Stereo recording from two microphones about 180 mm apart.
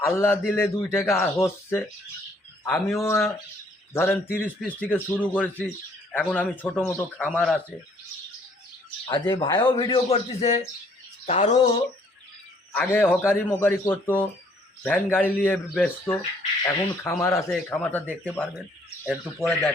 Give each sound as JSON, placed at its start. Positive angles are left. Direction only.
{"t": 0.0, "sound": "a man's voice", "side_deg": 15}
{"t": 2.9, "sound": "a man's voice", "side_deg": 15}
{"t": 9.0, "sound": "a man's voice", "side_deg": 25}
{"t": 12.7, "sound": "a man's voice", "side_deg": 10}